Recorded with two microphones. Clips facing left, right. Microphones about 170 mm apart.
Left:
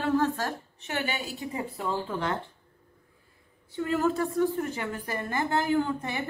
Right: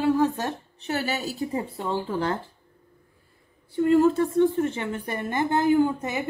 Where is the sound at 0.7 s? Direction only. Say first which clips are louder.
Right 6 dB; 35° right (ahead or behind).